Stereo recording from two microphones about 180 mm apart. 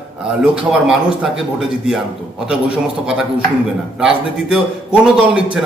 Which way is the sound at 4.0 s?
5° right (ahead or behind).